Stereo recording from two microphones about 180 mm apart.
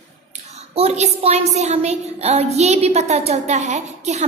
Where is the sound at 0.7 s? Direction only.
35° right (ahead or behind).